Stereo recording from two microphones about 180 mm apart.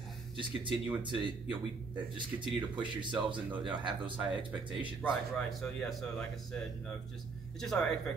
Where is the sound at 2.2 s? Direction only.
25° right (ahead or behind).